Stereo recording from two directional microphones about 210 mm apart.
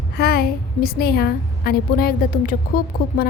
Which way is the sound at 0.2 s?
45° left (ahead or behind).